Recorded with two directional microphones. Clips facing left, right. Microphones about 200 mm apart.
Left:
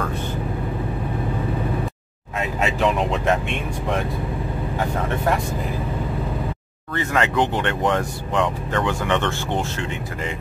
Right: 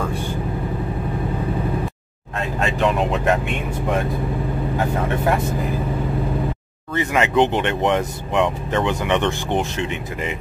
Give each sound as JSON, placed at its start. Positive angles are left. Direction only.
{"t": 2.6, "sound": "speech", "side_deg": 0}
{"t": 7.0, "sound": "speech", "side_deg": -15}